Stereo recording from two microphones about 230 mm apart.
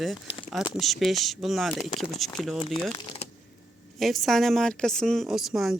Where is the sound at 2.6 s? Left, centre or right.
Left.